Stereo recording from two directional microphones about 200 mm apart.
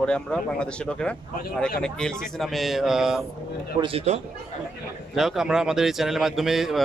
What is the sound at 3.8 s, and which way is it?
Speech, 30° right (ahead or behind).